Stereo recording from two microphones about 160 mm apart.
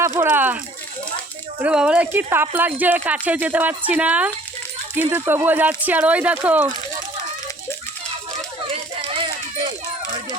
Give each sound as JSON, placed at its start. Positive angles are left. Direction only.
{"t": 0.0, "sound": "speech", "side_deg": -15}
{"t": 1.6, "sound": "speech", "side_deg": -5}
{"t": 8.7, "sound": "a sound", "side_deg": -35}